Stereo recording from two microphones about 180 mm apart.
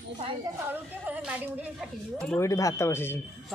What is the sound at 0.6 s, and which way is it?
A woman's voice, 10° right (ahead or behind).